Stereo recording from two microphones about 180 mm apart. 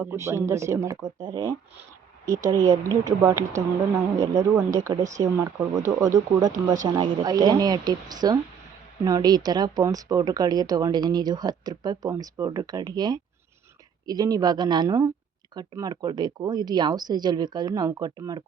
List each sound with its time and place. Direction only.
0.0 s speech: 15° right (ahead or behind)